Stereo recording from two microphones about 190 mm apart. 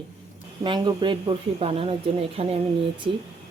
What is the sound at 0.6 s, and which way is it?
Speech, 25° right (ahead or behind).